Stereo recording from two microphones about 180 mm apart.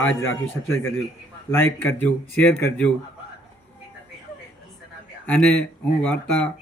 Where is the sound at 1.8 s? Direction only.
10° left (ahead or behind).